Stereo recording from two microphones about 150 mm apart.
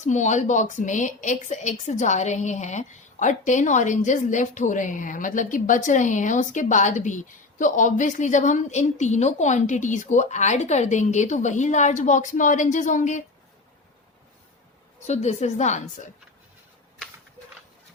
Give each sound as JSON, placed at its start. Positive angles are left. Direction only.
{"t": 0.0, "sound": "a woman's voice", "side_deg": 55}
{"t": 15.0, "sound": "a woman's voice", "side_deg": 45}